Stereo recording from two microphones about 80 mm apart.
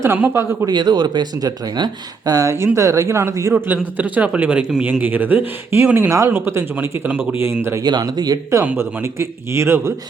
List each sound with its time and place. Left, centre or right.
0.0 s a man's voice: right
0.6 s speech: right
2.7 s a man's voice: right
3.5 s speech: right
6.1 s a man's voice: right
6.7 s speech: right
7.9 s speech: right
8.8 s a man's voice: right